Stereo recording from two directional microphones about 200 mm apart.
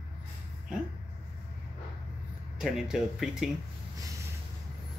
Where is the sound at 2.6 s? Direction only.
Centre (ahead or behind).